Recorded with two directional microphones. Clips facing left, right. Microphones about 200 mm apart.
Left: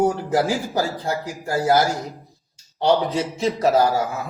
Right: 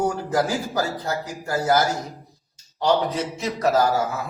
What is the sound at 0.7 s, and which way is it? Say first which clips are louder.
Speech: left 2 dB; 30° left (ahead or behind).